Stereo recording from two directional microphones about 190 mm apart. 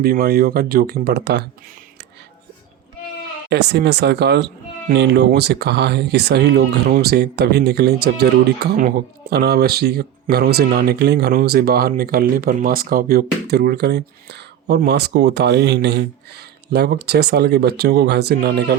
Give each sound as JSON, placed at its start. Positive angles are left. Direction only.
{"t": 0.0, "sound": "speech", "side_deg": -50}
{"t": 3.5, "sound": "speech", "side_deg": -60}